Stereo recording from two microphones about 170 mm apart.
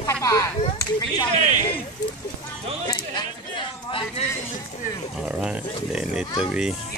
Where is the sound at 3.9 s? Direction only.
30° left (ahead or behind).